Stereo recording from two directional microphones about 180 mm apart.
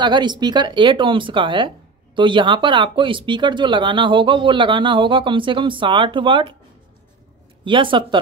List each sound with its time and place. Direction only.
0.0 s speech: 25° right (ahead or behind)
7.6 s speech: 30° right (ahead or behind)